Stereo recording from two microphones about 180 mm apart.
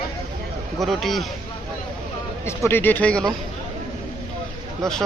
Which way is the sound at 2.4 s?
15° left (ahead or behind).